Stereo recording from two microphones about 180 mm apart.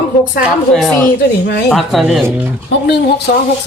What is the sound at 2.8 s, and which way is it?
Speech, 65° left (ahead or behind).